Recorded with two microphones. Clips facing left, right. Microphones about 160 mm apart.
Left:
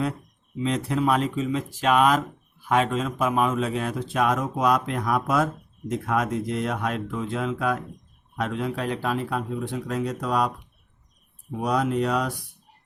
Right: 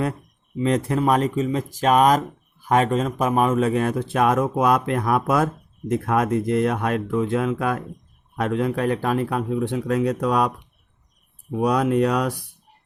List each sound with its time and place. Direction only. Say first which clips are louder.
0.6 s a man's voice: right 4 dB; 50° right (ahead or behind)
11.6 s a man's voice: right 5 dB; 65° right (ahead or behind)